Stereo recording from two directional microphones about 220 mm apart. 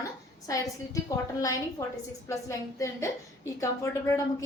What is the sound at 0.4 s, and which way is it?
A woman's voice, 15° left (ahead or behind).